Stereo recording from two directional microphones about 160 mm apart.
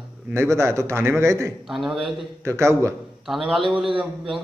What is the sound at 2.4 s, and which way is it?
Speech, 20° right (ahead or behind).